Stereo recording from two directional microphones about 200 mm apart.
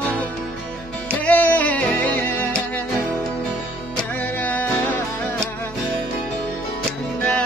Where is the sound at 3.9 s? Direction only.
10° left (ahead or behind).